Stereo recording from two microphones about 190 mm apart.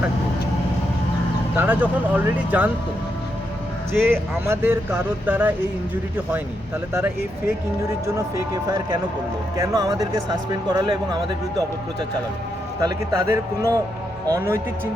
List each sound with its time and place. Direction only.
1.5 s speech: 10° right (ahead or behind)
3.9 s speech: 10° right (ahead or behind)
6.9 s speech: 10° right (ahead or behind)
9.6 s speech: 20° right (ahead or behind)
12.8 s speech: 15° right (ahead or behind)